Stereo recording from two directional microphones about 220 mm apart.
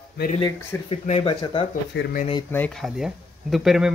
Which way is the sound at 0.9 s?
25° left (ahead or behind).